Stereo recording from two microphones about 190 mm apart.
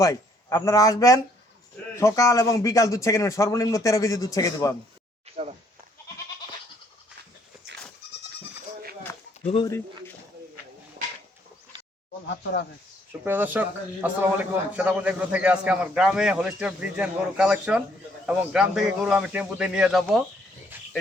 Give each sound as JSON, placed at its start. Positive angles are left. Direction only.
{"t": 0.0, "sound": "speech", "side_deg": 20}
{"t": 9.1, "sound": "a sound", "side_deg": 15}
{"t": 13.2, "sound": "a man's voice", "side_deg": -10}